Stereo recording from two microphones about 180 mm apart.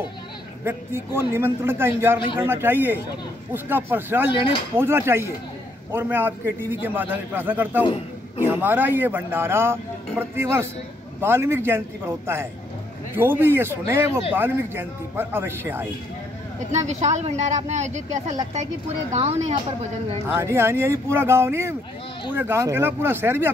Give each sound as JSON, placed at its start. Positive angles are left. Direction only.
{"t": 0.7, "sound": "speech", "side_deg": -15}
{"t": 13.1, "sound": "speech", "side_deg": -10}
{"t": 16.7, "sound": "a woman's voice", "side_deg": -40}
{"t": 20.2, "sound": "speech", "side_deg": -15}